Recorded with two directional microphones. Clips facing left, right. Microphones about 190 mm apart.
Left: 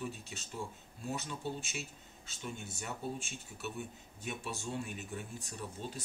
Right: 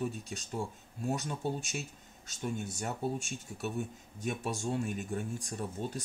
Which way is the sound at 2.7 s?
45° right (ahead or behind).